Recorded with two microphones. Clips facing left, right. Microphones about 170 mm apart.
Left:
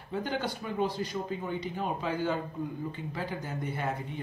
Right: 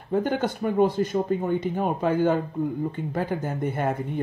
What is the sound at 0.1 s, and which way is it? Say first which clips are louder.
Speech: right 8 dB; 50° right (ahead or behind).